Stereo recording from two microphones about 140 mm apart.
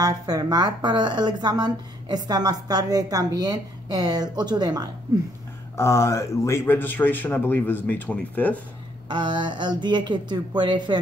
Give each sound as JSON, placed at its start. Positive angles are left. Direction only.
{"t": 0.0, "sound": "speech", "side_deg": -25}
{"t": 5.8, "sound": "a man's voice", "side_deg": 20}
{"t": 9.1, "sound": "speech", "side_deg": -35}